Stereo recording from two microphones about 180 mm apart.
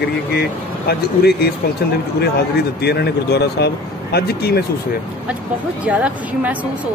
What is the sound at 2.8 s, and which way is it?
Speech, 65° left (ahead or behind).